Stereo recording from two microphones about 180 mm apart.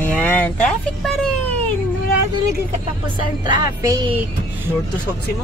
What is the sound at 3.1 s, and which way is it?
Speech, 25° right (ahead or behind).